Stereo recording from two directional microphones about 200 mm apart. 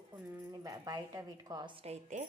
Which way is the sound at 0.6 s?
15° right (ahead or behind).